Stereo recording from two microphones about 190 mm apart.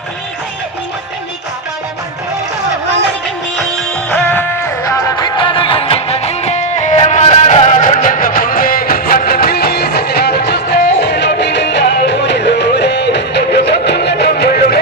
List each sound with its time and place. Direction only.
4.1 s music: 10° left (ahead or behind); by 14.8 s 55° left (ahead or behind)